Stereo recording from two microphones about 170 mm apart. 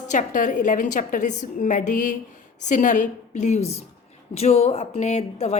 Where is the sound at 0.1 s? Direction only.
45° left (ahead or behind).